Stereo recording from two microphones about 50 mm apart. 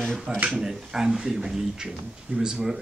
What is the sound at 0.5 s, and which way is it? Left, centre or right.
Speech, centre.